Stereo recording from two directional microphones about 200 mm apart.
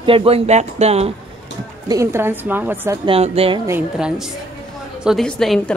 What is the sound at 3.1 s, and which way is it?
Speech, 30° right (ahead or behind).